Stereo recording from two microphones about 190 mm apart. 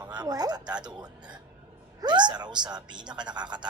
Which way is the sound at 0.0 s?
20° right (ahead or behind).